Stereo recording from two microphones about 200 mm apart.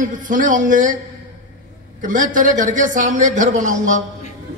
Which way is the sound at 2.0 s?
40° right (ahead or behind).